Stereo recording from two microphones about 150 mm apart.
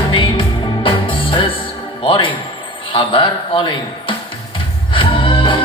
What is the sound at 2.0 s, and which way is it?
Speech, 35° left (ahead or behind).